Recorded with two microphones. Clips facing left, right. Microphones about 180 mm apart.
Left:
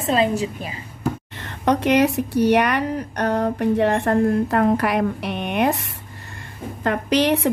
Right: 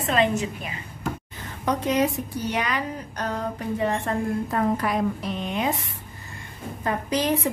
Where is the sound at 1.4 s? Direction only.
75° left (ahead or behind).